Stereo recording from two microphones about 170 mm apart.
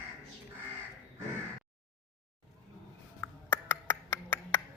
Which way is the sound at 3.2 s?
15° left (ahead or behind).